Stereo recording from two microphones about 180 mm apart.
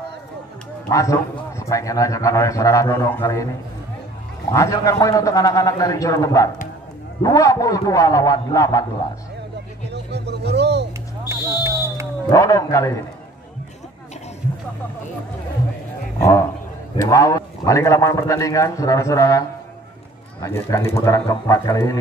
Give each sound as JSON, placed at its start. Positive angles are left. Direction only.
{"t": 0.8, "sound": "a man's voice", "side_deg": 15}
{"t": 4.5, "sound": "a man's voice", "side_deg": 20}
{"t": 10.1, "sound": "a sound", "side_deg": -70}
{"t": 11.6, "sound": "a sound", "side_deg": -15}
{"t": 12.3, "sound": "a man's voice", "side_deg": 20}
{"t": 16.2, "sound": "a man's voice", "side_deg": 20}
{"t": 20.4, "sound": "a man's voice", "side_deg": 15}